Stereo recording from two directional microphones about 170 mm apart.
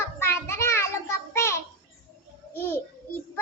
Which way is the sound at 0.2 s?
15° left (ahead or behind).